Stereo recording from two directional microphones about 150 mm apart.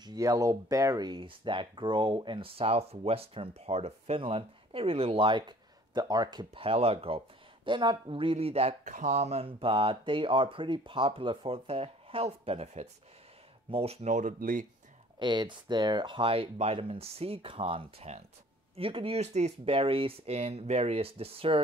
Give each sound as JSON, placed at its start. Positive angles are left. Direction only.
{"t": 0.0, "sound": "speech", "side_deg": -25}
{"t": 15.1, "sound": "speech", "side_deg": -30}